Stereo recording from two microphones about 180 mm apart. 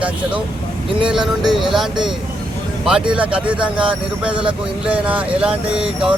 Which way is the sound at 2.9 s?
5° right (ahead or behind).